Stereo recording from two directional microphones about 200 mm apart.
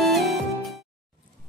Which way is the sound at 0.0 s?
Centre (ahead or behind).